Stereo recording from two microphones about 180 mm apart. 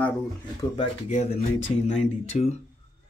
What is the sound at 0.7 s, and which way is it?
Speech, 35° left (ahead or behind).